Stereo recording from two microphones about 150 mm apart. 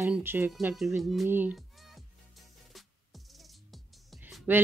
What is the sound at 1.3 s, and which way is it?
Speech, 10° right (ahead or behind).